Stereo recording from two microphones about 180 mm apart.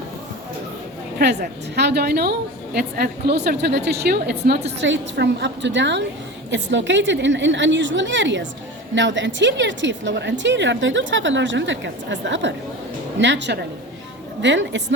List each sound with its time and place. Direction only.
1.2 s a woman's voice: 70° right (ahead or behind)
6.5 s a woman's voice: 90° right
14.4 s a woman's voice: 90° right